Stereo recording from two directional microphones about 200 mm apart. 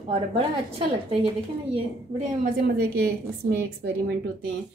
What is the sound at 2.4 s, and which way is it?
A woman's voice, 50° right (ahead or behind).